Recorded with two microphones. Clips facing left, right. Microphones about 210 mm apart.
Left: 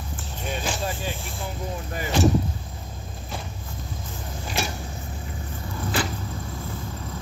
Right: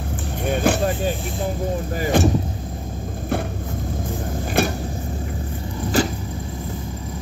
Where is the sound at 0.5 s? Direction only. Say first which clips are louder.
Right 9 dB; 60° right (ahead or behind).